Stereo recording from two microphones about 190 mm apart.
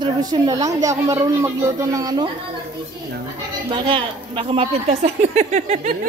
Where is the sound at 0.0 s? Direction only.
20° right (ahead or behind).